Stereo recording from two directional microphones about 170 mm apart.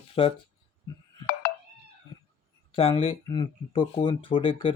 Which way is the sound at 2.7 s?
35° left (ahead or behind).